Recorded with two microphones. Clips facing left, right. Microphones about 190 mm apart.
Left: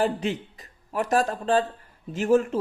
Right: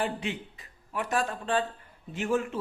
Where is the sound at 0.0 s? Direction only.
40° left (ahead or behind).